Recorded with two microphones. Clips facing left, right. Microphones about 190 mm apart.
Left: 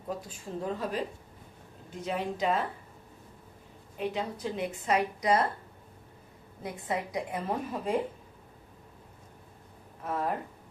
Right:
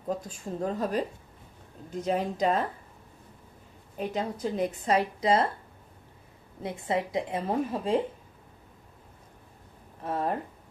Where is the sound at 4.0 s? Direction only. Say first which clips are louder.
Right 2 dB; 40° right (ahead or behind).